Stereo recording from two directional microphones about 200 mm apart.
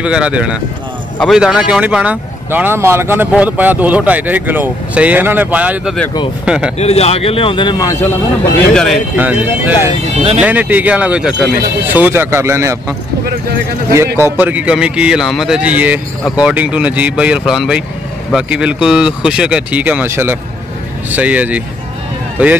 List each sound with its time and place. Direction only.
0.0 s speech: 5° right (ahead or behind)
6.8 s speech: 30° left (ahead or behind); by 8.1 s 15° left (ahead or behind)
8.7 s speech: centre (ahead or behind)
9.1 s speech: 10° right (ahead or behind)
14.2 s speech: 10° right (ahead or behind)